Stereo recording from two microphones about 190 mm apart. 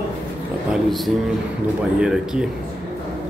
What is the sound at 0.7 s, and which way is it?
Speech, centre (ahead or behind).